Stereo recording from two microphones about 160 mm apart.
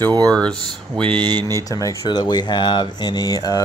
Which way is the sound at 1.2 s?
25° right (ahead or behind).